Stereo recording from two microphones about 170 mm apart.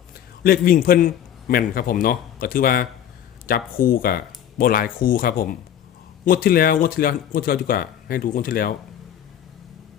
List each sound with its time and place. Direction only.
0.4 s a man's voice: 60° left (ahead or behind)